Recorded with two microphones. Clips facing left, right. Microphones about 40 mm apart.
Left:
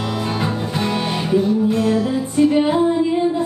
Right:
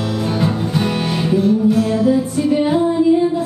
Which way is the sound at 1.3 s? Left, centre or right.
Centre.